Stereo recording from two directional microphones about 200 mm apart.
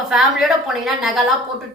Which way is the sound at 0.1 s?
Centre (ahead or behind).